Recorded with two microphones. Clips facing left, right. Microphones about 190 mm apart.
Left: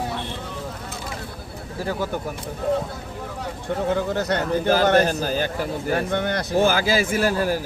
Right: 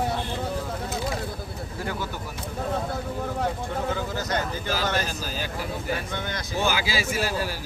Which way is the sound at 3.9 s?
65° left (ahead or behind).